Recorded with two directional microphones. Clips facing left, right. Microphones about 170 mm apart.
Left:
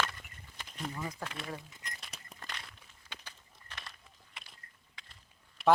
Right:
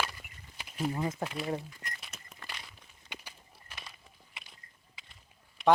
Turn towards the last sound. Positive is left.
turn(degrees=0)  # may be behind; listen again after turning